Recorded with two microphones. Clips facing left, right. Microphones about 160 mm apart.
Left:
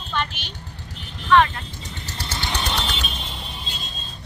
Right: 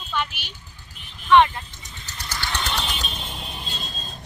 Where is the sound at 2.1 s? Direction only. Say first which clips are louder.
Left 2 dB; 30° left (ahead or behind).